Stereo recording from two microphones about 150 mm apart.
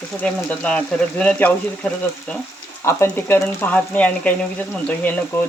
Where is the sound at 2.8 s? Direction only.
15° left (ahead or behind).